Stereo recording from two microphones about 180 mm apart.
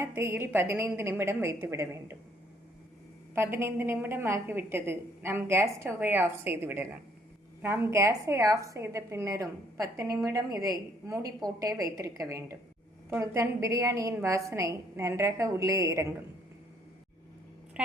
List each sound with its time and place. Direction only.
0.0 s a woman's voice: 15° right (ahead or behind)
3.3 s a woman's voice: 15° right (ahead or behind)